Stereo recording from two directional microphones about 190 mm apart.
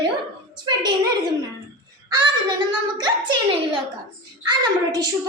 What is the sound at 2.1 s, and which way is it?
A woman's voice, 25° right (ahead or behind).